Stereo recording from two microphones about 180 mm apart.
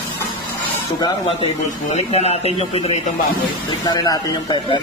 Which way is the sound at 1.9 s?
35° left (ahead or behind).